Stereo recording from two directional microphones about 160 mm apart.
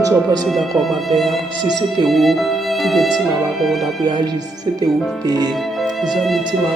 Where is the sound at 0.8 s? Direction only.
Centre (ahead or behind).